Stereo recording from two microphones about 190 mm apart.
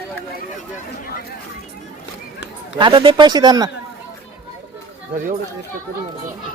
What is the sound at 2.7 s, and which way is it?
Speech, 25° right (ahead or behind).